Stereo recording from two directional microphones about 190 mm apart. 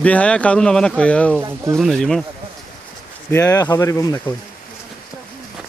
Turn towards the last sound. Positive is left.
turn(degrees=15)  # may be behind; listen again after turning